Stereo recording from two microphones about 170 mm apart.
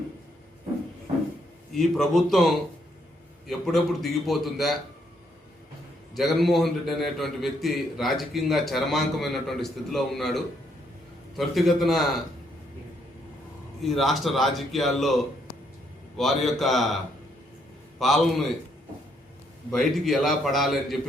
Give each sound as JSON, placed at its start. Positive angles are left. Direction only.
{"t": 1.7, "sound": "a man's voice", "side_deg": 0}
{"t": 6.1, "sound": "a man's voice", "side_deg": 0}
{"t": 13.8, "sound": "a man's voice", "side_deg": 0}
{"t": 18.0, "sound": "a man's voice", "side_deg": 0}
{"t": 19.7, "sound": "a man's voice", "side_deg": 0}